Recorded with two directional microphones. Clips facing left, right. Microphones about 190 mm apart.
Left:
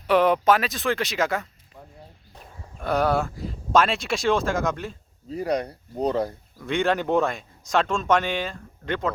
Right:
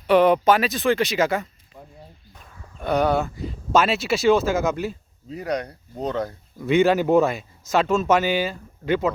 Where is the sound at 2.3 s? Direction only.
30° left (ahead or behind).